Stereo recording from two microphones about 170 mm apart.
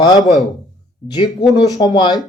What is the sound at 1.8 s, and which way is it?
Speech, 25° left (ahead or behind).